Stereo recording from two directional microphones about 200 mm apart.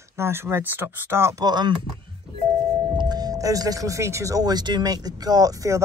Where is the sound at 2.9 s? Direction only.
20° right (ahead or behind).